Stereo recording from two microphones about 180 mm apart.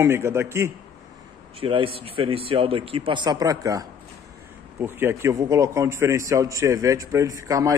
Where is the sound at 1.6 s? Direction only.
30° right (ahead or behind).